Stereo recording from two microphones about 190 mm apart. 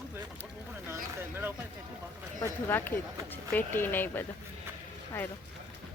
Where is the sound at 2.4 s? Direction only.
10° left (ahead or behind).